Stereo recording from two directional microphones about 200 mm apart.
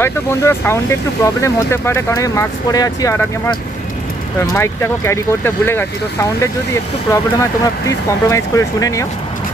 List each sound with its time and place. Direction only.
0.0 s speech: 15° left (ahead or behind)